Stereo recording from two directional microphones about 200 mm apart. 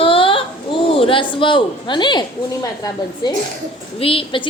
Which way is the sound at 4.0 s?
25° left (ahead or behind).